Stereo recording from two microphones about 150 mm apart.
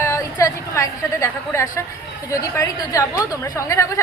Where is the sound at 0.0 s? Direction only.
20° left (ahead or behind).